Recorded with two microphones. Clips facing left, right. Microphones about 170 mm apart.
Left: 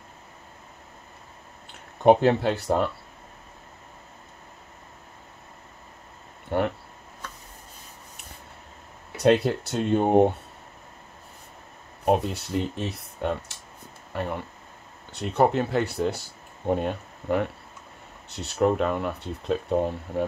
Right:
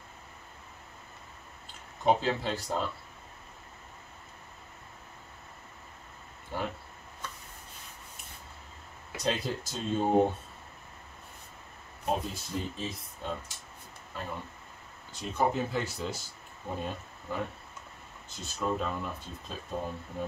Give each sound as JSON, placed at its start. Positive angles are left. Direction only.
{"t": 1.7, "sound": "speech", "side_deg": 60}
{"t": 6.5, "sound": "a sound", "side_deg": 65}
{"t": 9.1, "sound": "speech", "side_deg": 65}
{"t": 12.0, "sound": "speech", "side_deg": 70}